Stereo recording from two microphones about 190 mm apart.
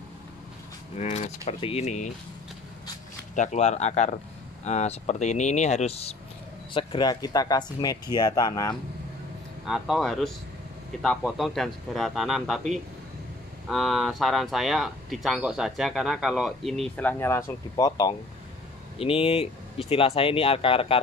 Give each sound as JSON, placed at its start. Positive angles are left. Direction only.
{"t": 0.9, "sound": "speech", "side_deg": 35}
{"t": 3.3, "sound": "speech", "side_deg": 35}
{"t": 9.7, "sound": "speech", "side_deg": 0}